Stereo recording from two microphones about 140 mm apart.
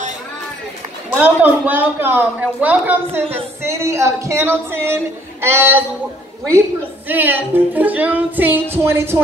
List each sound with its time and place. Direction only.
1.1 s a woman's voice: 15° right (ahead or behind)
7.1 s a woman's voice: 15° right (ahead or behind)